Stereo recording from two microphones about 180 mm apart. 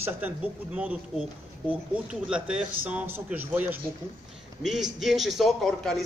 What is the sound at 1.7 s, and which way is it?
A man's voice, 5° right (ahead or behind).